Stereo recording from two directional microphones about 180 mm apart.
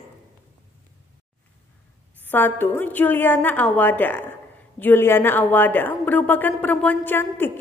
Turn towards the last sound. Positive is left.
turn(degrees=10)  # may be behind; listen again after turning